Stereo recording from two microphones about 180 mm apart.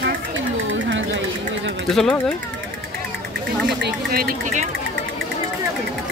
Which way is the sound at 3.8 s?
55° right (ahead or behind).